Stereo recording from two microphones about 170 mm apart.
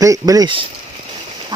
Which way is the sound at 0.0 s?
20° right (ahead or behind).